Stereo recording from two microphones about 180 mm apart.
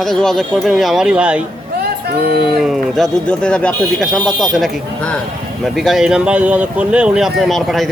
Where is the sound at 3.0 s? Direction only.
5° left (ahead or behind).